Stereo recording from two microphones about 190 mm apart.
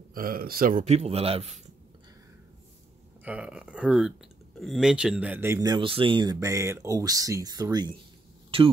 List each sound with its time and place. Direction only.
0.1 s speech: 50° right (ahead or behind); by 1.6 s 30° right (ahead or behind)
3.3 s speech: 5° right (ahead or behind)
8.5 s a sound: 30° right (ahead or behind)